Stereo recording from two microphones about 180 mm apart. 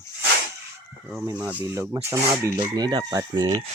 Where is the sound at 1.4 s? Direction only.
10° right (ahead or behind).